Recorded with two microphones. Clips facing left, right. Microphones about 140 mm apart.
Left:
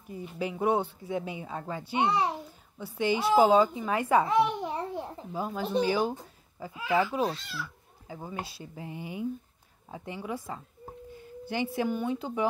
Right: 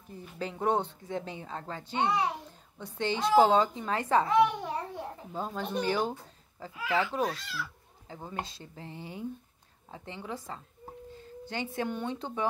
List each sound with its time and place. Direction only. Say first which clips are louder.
0.1 s speech: left 4 dB; 10° left (ahead or behind)
6.7 s speech: left 3 dB; 20° left (ahead or behind)
7.2 s speech: left 2 dB; 30° left (ahead or behind)
8.1 s speech: left 1 dB; 10° left (ahead or behind)